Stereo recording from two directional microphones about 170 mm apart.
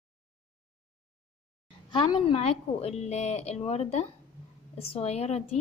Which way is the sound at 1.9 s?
25° left (ahead or behind).